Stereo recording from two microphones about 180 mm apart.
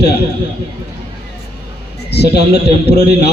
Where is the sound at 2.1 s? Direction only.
65° left (ahead or behind).